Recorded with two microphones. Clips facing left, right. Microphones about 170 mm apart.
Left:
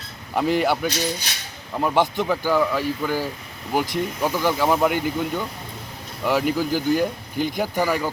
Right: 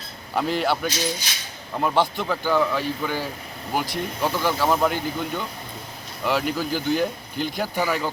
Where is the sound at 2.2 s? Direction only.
10° left (ahead or behind).